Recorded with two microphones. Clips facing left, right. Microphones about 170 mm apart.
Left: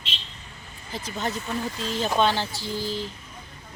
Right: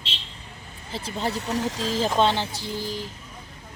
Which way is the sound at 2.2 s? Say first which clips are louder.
Left 1 dB; 20° right (ahead or behind).